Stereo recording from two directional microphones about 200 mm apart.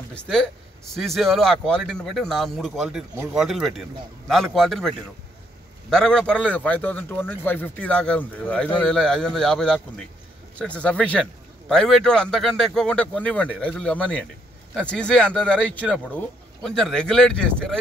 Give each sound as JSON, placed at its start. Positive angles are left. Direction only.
{"t": 0.1, "sound": "a man's voice", "side_deg": 5}